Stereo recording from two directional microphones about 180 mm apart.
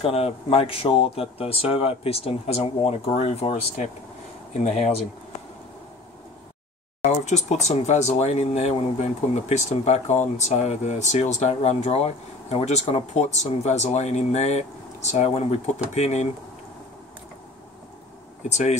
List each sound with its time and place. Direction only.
0.0 s speech: 35° left (ahead or behind)
7.1 s speech: 40° left (ahead or behind)
18.5 s speech: 40° left (ahead or behind)